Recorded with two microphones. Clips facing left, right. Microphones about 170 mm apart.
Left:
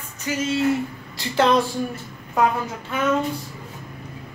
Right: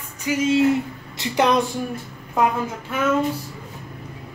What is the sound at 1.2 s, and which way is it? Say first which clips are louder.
Speech: even; 20° right (ahead or behind).